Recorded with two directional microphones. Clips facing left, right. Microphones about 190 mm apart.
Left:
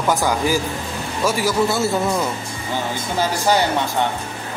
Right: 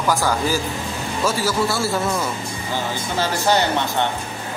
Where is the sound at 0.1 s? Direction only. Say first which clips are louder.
Left 2 dB; 15° left (ahead or behind).